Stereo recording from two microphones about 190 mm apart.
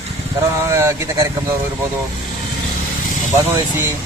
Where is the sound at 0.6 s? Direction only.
15° right (ahead or behind).